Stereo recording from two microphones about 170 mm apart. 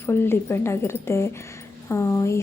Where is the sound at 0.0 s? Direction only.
15° left (ahead or behind).